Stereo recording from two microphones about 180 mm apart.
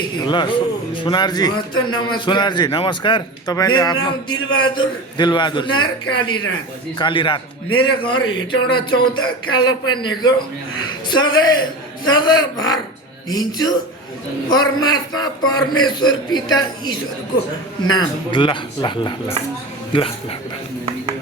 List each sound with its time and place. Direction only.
0.3 s speech: 25° left (ahead or behind)
17.9 s speech: 25° left (ahead or behind)